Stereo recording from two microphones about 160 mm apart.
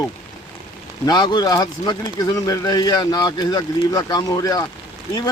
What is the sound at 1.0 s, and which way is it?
Speech, 25° left (ahead or behind).